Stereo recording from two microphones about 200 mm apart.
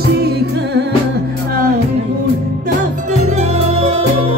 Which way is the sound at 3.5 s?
30° right (ahead or behind).